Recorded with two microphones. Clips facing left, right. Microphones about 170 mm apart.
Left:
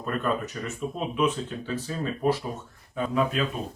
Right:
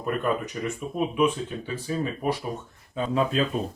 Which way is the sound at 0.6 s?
15° right (ahead or behind).